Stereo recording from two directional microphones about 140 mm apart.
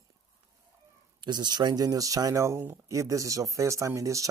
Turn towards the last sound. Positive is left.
turn(degrees=-25)  # may be behind; listen again after turning